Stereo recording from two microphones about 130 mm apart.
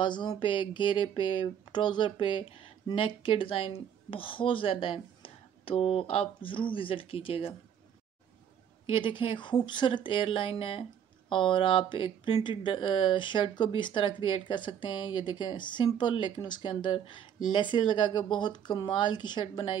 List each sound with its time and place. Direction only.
0.0 s speech: 35° left (ahead or behind)
8.8 s speech: 40° left (ahead or behind)